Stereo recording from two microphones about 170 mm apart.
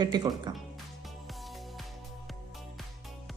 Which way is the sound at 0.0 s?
25° right (ahead or behind).